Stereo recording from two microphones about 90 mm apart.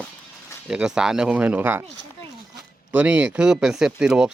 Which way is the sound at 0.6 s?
10° right (ahead or behind).